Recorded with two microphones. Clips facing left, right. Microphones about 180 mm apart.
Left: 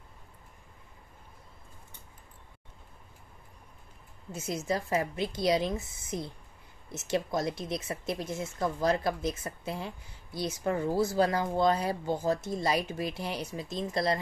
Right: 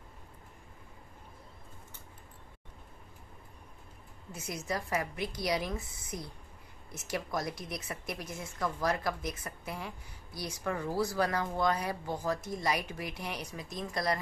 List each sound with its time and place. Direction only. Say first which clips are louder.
4.3 s speech: left 5 dB; 25° left (ahead or behind)